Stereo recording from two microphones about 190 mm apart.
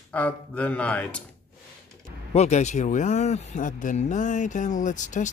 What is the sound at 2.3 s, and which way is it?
Speech, 35° left (ahead or behind).